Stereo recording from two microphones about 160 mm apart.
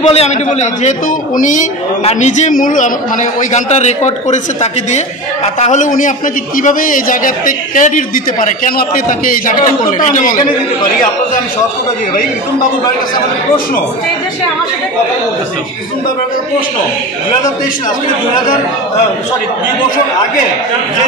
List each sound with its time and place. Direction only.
0.0 s a man's voice: 40° left (ahead or behind); by 9.8 s 55° left (ahead or behind)